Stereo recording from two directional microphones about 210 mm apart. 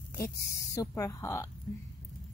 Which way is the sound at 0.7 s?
15° left (ahead or behind).